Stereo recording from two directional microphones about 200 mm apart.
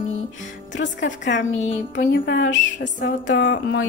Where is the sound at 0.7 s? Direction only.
65° left (ahead or behind).